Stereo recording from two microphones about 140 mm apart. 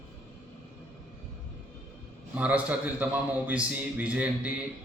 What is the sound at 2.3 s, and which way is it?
Speech, 10° right (ahead or behind).